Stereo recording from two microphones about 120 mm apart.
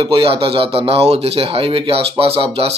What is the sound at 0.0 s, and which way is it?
Speech, 45° right (ahead or behind).